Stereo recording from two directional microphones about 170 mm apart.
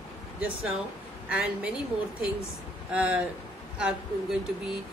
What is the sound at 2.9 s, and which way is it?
Speech, 5° right (ahead or behind).